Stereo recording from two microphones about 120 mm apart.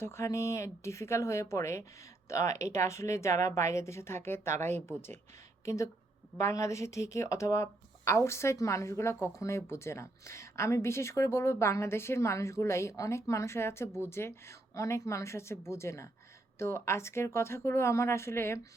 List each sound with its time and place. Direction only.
0.0 s a woman's voice: 25° left (ahead or behind)